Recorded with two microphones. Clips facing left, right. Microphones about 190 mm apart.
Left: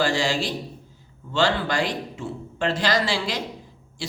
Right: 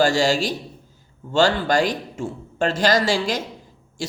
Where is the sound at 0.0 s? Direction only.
45° right (ahead or behind).